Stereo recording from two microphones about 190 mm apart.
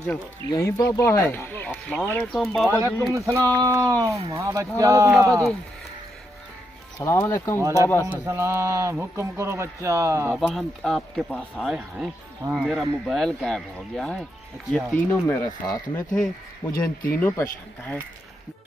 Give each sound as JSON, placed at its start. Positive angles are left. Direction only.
{"t": 0.5, "sound": "speech", "side_deg": 15}
{"t": 3.1, "sound": "speech", "side_deg": -15}
{"t": 7.0, "sound": "speech", "side_deg": 10}
{"t": 7.6, "sound": "speech", "side_deg": -15}
{"t": 10.3, "sound": "speech", "side_deg": 0}
{"t": 15.6, "sound": "speech", "side_deg": 20}
{"t": 16.6, "sound": "speech", "side_deg": 10}